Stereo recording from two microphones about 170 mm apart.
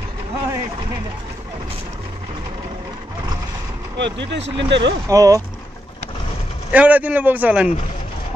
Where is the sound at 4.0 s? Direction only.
90° right.